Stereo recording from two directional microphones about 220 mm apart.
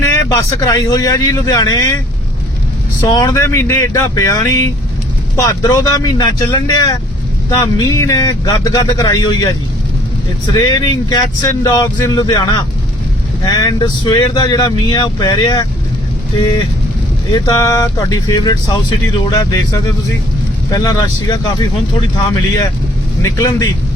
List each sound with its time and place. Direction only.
0.0 s speech: 15° left (ahead or behind)
3.1 s speech: 15° left (ahead or behind)
10.5 s speech: 15° left (ahead or behind)
17.3 s speech: 15° left (ahead or behind)
23.2 s speech: 15° left (ahead or behind)